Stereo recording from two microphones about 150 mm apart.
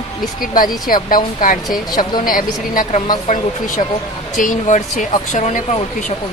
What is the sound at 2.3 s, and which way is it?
Speech, 65° left (ahead or behind).